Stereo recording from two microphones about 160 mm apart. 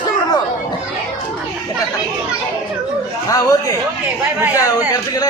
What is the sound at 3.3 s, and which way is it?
Speech, 20° left (ahead or behind).